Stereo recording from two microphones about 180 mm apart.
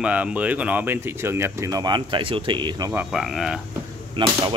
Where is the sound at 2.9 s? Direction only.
Centre (ahead or behind).